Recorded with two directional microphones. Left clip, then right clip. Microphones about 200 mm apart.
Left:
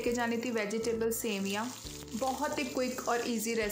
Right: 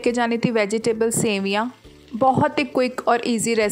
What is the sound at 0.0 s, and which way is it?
A woman's voice, 45° right (ahead or behind).